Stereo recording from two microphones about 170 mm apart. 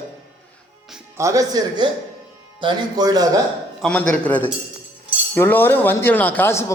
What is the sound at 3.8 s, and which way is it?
Speech, 5° left (ahead or behind).